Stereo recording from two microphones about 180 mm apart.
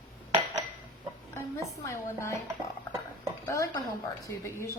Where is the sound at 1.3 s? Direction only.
15° left (ahead or behind).